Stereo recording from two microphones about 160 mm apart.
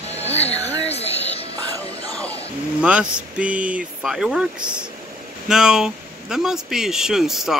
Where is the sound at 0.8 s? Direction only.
40° left (ahead or behind).